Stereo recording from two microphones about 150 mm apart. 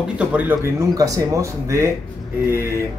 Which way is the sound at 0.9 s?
25° right (ahead or behind).